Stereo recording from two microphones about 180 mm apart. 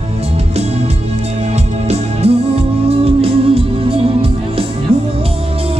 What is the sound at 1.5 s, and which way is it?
Music, 35° right (ahead or behind).